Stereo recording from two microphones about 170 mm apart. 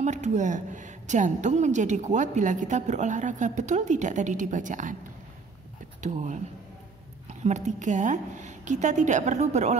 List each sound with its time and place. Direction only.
0.0 s a woman's voice: 45° right (ahead or behind)
5.9 s speech: 45° right (ahead or behind)
7.4 s a woman's voice: 45° right (ahead or behind)